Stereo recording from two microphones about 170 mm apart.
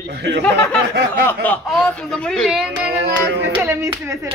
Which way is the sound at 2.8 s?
80° right.